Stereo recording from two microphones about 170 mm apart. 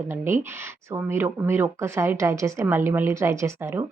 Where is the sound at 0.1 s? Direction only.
15° right (ahead or behind).